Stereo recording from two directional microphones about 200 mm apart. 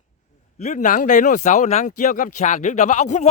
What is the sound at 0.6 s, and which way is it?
Speech, 35° left (ahead or behind).